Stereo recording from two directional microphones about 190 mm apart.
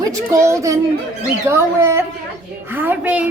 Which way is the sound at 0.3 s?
15° right (ahead or behind).